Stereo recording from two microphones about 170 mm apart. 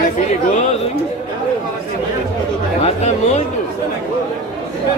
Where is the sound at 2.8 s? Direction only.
40° left (ahead or behind).